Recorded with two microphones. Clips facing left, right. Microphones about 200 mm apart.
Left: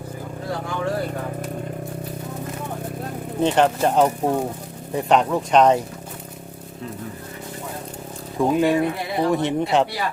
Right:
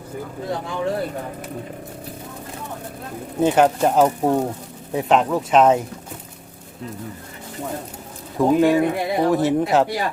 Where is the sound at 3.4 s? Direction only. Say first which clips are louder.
Right 2 dB; 5° right (ahead or behind).